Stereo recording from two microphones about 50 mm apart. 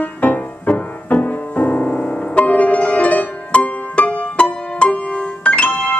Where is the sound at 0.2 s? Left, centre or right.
Left.